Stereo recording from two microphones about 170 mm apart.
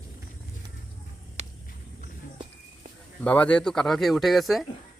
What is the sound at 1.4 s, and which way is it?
Walk, 40° right (ahead or behind).